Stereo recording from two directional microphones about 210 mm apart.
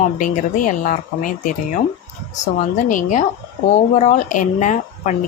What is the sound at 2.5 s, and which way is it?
Speech, 35° left (ahead or behind).